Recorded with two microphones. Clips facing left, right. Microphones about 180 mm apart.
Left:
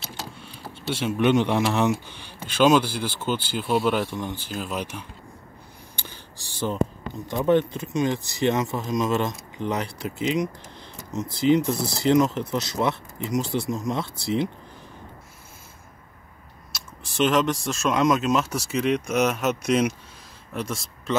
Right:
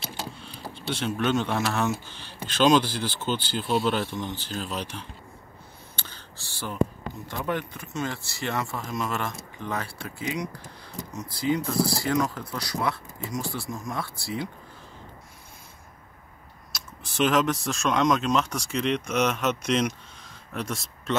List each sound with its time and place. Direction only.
0.7 s a man's voice: 10° left (ahead or behind)
5.9 s a sound: 15° left (ahead or behind)
6.7 s speech: 20° left (ahead or behind)
16.7 s speech: centre (ahead or behind)